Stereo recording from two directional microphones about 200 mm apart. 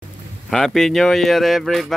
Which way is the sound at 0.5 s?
Centre (ahead or behind).